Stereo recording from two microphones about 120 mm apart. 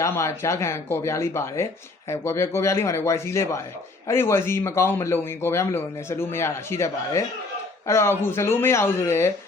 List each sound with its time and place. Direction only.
0.0 s speech: 25° left (ahead or behind)